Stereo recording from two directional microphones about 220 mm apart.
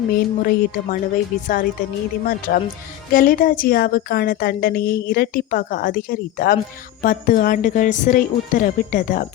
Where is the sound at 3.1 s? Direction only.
40° left (ahead or behind).